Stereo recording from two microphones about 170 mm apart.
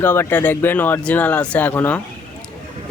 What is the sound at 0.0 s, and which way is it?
Speech, 10° left (ahead or behind).